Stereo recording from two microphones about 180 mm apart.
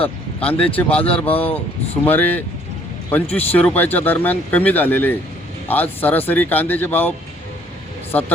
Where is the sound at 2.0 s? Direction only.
10° left (ahead or behind).